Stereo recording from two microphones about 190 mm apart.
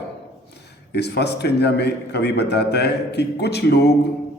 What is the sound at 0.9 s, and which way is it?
Speech, 60° left (ahead or behind).